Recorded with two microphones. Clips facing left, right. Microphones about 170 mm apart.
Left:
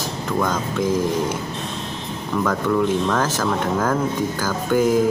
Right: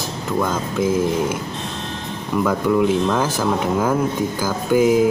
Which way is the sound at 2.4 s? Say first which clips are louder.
Right 3 dB; 10° right (ahead or behind).